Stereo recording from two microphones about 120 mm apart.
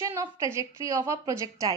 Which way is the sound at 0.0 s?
25° right (ahead or behind).